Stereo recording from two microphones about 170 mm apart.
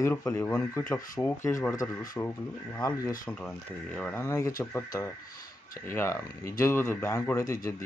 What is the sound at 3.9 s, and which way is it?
Speech, 10° left (ahead or behind).